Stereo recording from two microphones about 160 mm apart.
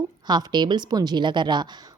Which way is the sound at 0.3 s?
25° right (ahead or behind).